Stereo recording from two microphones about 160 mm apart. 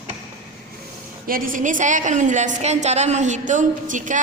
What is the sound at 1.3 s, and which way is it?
A woman's voice, 55° right (ahead or behind).